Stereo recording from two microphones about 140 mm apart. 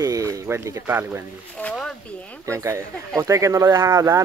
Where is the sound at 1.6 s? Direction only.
10° left (ahead or behind).